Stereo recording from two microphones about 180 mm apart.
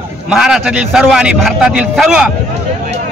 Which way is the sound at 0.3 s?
5° right (ahead or behind).